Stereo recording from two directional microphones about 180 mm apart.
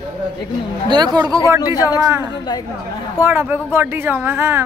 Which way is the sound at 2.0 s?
20° right (ahead or behind).